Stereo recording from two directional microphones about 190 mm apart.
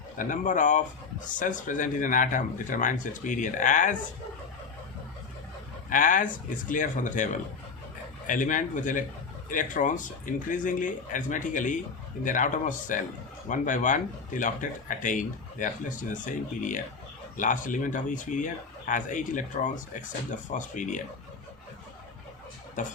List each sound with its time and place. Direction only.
0.2 s speech: 45° left (ahead or behind)
5.9 s speech: 45° left (ahead or behind)
8.3 s speech: 45° left (ahead or behind)
22.8 s speech: 40° left (ahead or behind)